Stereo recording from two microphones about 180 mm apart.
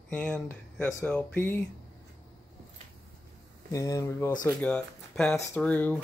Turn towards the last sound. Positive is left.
turn(degrees=10)  # may be behind; listen again after turning